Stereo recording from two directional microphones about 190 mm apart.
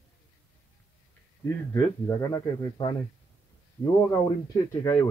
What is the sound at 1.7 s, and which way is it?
A man's voice, 15° left (ahead or behind).